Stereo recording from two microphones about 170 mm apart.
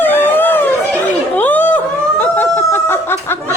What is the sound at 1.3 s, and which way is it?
Chatter, 10° left (ahead or behind).